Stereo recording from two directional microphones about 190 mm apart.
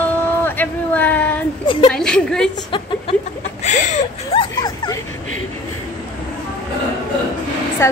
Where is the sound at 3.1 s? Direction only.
30° left (ahead or behind).